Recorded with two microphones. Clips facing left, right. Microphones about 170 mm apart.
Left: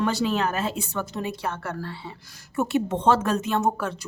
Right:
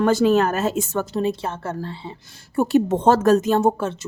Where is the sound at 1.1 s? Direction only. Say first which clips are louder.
Right 6 dB; 30° right (ahead or behind).